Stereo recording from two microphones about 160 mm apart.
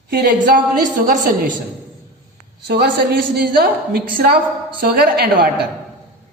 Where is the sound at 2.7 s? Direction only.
85° right.